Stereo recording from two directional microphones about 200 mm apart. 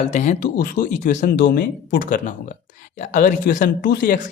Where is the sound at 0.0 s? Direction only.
35° left (ahead or behind).